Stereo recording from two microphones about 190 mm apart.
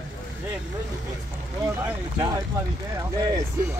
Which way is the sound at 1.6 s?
15° right (ahead or behind).